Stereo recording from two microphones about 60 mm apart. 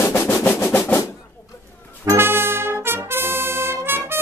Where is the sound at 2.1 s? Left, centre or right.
Right.